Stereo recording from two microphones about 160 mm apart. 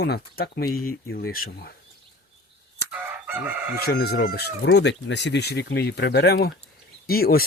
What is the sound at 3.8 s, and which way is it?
Speech, 85° left.